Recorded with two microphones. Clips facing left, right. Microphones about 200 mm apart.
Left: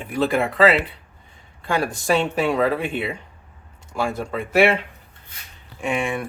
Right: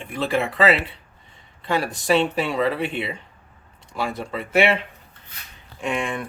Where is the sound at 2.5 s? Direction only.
50° left (ahead or behind).